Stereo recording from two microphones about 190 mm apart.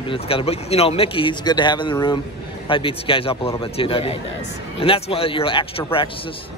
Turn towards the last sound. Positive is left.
turn(degrees=30)  # may be behind; listen again after turning